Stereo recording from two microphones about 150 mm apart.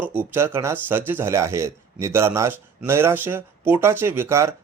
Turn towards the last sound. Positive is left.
turn(degrees=-20)  # may be behind; listen again after turning